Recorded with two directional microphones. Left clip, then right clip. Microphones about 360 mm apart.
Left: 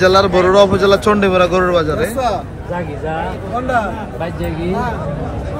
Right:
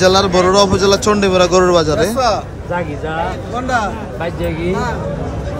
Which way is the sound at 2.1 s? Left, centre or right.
Centre.